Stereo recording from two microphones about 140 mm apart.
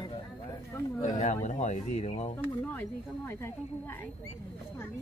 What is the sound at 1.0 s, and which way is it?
Speech, 60° left (ahead or behind).